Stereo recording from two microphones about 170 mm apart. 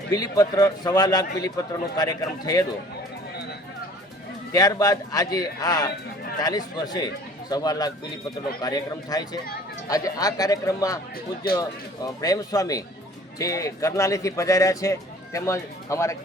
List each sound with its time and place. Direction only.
0.1 s speech: 20° left (ahead or behind)
4.5 s speech: 20° left (ahead or behind)